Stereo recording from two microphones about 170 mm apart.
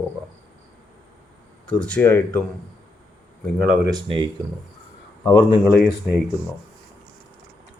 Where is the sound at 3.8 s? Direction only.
25° right (ahead or behind).